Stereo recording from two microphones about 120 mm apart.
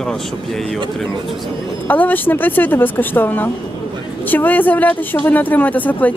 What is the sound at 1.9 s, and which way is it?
A woman's voice, 15° left (ahead or behind).